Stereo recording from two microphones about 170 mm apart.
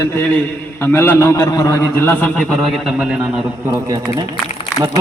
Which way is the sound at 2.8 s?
5° right (ahead or behind).